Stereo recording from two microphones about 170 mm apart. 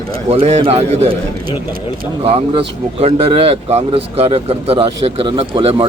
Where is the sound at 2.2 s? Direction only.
35° right (ahead or behind).